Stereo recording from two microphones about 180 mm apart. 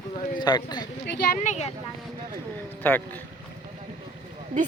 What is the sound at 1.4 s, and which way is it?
Speech, 40° left (ahead or behind).